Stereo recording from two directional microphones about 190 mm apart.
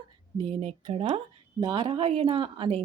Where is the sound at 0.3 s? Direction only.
30° right (ahead or behind).